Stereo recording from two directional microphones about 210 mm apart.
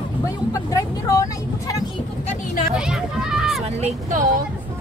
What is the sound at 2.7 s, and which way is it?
Speech, centre (ahead or behind).